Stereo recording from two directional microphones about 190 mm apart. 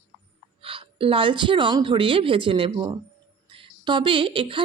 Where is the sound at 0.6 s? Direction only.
30° right (ahead or behind).